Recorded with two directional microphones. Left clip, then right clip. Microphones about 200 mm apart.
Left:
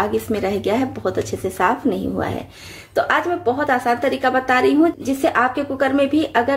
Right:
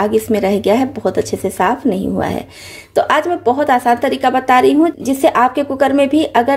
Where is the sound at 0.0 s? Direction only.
30° right (ahead or behind).